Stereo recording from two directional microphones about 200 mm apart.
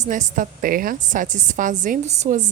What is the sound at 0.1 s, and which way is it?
A woman's voice, 40° right (ahead or behind).